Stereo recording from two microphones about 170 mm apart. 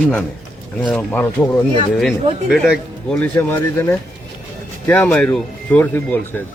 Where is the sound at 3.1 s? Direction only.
10° left (ahead or behind).